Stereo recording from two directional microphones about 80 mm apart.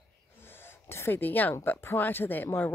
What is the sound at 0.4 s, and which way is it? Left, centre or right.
Speech, left.